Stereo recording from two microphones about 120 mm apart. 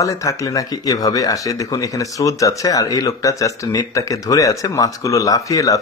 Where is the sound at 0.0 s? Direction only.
30° left (ahead or behind).